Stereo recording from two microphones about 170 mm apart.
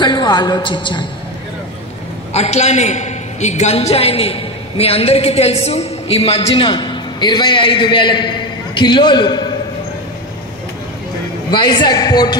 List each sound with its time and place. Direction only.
0.0 s a man's voice: 25° left (ahead or behind)
2.3 s a man's voice: 40° left (ahead or behind); by 9.5 s 25° left (ahead or behind)
11.5 s a man's voice: 25° left (ahead or behind)